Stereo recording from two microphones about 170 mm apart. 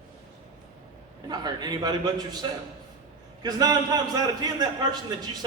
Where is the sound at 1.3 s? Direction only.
25° right (ahead or behind).